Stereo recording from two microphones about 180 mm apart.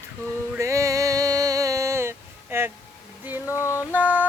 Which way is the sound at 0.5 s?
15° right (ahead or behind).